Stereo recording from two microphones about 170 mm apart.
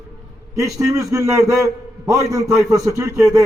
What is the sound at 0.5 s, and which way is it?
A man's voice, 20° right (ahead or behind).